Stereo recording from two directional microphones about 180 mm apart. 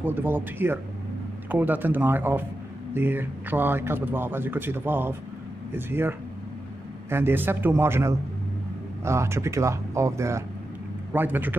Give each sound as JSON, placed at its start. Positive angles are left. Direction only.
{"t": 0.0, "sound": "speech", "side_deg": -10}